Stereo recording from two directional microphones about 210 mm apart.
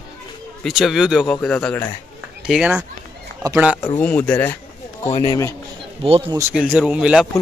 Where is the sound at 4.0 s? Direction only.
5° left (ahead or behind).